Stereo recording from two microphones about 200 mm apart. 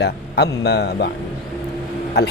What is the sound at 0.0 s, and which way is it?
A man's voice, 55° left (ahead or behind).